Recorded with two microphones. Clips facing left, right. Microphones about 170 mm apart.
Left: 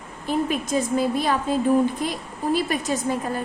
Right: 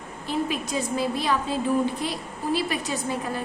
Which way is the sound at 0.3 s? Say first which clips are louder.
Left 4 dB; 50° left (ahead or behind).